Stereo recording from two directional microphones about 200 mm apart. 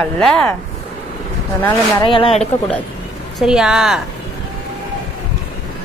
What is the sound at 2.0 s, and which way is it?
Speech, 25° left (ahead or behind).